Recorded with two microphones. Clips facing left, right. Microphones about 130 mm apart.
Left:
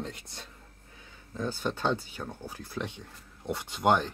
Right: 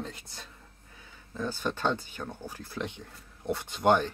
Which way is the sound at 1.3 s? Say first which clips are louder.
Even; 15° left (ahead or behind).